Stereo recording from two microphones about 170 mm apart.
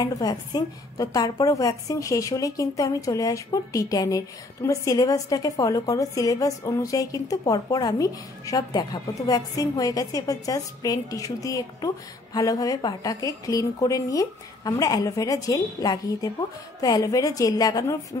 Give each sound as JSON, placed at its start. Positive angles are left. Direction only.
{"t": 0.0, "sound": "a woman's voice", "side_deg": 25}